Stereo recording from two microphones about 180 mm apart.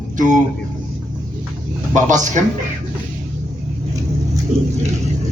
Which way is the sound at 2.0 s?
45° right (ahead or behind).